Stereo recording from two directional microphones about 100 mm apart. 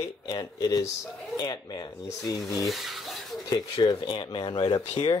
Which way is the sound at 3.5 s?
50° left (ahead or behind).